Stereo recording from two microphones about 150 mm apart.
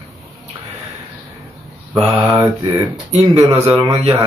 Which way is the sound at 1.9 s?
Centre (ahead or behind).